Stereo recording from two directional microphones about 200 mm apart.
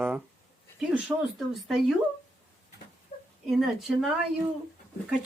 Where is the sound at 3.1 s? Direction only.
35° left (ahead or behind).